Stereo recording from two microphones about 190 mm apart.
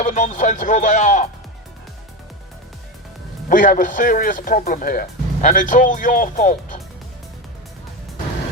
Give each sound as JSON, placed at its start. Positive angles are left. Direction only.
{"t": 0.0, "sound": "speech", "side_deg": 40}
{"t": 3.5, "sound": "speech", "side_deg": 45}